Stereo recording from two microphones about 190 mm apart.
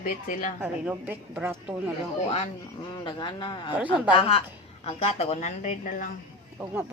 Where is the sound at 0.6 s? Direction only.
10° right (ahead or behind).